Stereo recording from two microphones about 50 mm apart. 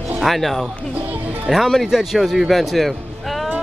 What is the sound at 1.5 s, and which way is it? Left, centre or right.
Speech, centre.